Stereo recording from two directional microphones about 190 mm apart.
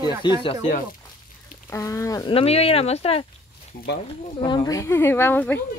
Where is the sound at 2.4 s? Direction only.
30° left (ahead or behind).